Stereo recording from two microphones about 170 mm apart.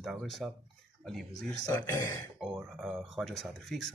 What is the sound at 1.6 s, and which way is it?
Speech, 20° left (ahead or behind).